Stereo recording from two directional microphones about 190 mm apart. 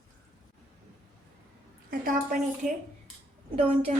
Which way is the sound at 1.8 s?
45° right (ahead or behind).